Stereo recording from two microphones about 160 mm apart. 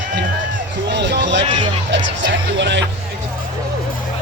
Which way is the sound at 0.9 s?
90° right.